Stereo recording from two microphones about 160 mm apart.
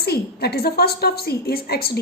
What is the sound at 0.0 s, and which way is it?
A woman's voice, 80° left.